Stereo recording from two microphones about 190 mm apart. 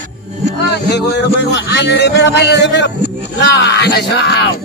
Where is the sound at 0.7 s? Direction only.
65° left (ahead or behind).